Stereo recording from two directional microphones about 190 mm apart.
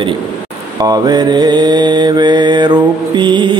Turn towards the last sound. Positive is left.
turn(degrees=-25)  # may be behind; listen again after turning